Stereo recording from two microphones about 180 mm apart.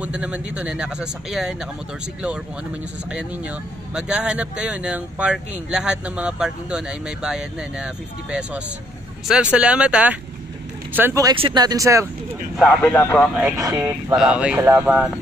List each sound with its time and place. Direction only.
0.0 s speech: 5° right (ahead or behind)
3.1 s speech: 5° right (ahead or behind)
11.3 s speech: 25° right (ahead or behind)
12.5 s speech: 5° left (ahead or behind)
13.3 s speech: 5° right (ahead or behind)
13.6 s speech: 20° right (ahead or behind)
14.1 s speech: 5° right (ahead or behind)